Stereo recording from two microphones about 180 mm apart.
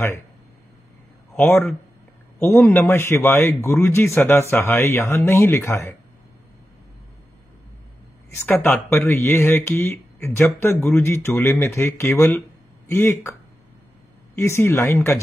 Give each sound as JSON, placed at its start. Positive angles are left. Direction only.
{"t": 1.3, "sound": "speech", "side_deg": 10}
{"t": 8.5, "sound": "speech", "side_deg": 10}